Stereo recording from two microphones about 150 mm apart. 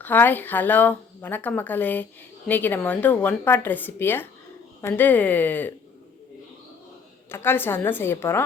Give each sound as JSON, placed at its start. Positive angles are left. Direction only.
{"t": 0.0, "sound": "speech", "side_deg": 10}
{"t": 7.3, "sound": "speech", "side_deg": 15}